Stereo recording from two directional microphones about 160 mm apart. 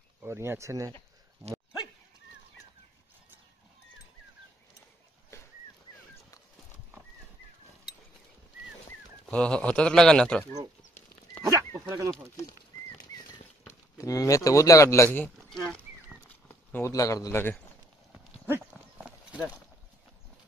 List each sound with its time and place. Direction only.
0.2 s speech: 15° right (ahead or behind)
5.3 s dog: 20° left (ahead or behind)
9.2 s speech: 5° left (ahead or behind)
11.4 s dog: 20° right (ahead or behind)
13.7 s speech: 20° left (ahead or behind)
15.1 s a sound: 5° left (ahead or behind)
16.4 s speech: 15° left (ahead or behind)
18.1 s clip-clop: 10° right (ahead or behind)